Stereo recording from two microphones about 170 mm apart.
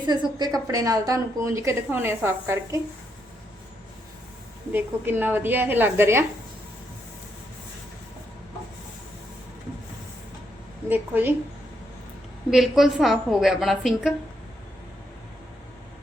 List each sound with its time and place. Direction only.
0.0 s a woman's voice: 25° right (ahead or behind)
4.7 s a woman's voice: 10° right (ahead or behind)
10.8 s a woman's voice: 10° right (ahead or behind)
12.5 s a woman's voice: centre (ahead or behind)